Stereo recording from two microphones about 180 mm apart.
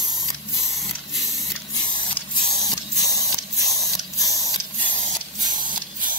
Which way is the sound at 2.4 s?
20° left (ahead or behind).